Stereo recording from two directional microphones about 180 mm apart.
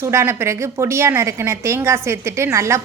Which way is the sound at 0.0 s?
15° right (ahead or behind).